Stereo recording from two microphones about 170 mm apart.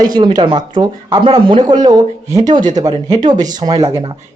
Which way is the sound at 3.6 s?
25° right (ahead or behind).